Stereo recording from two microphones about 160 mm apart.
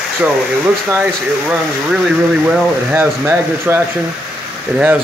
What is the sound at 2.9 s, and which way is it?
Speech, 15° right (ahead or behind).